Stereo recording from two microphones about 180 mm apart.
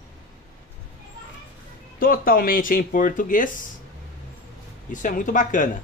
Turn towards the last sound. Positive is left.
turn(degrees=45)  # may be behind; listen again after turning